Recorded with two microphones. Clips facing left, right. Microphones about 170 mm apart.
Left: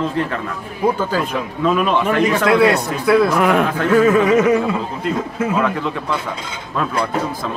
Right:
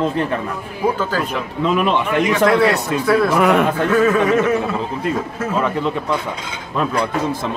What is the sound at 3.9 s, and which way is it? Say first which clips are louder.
Speech: left 3 dB; 10° left (ahead or behind).